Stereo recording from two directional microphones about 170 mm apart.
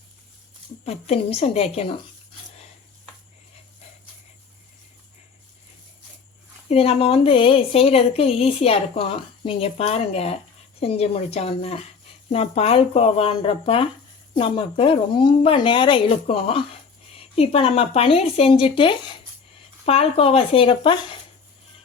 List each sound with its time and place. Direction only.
0.9 s a woman's voice: 40° left (ahead or behind)
6.7 s a woman's voice: 35° left (ahead or behind)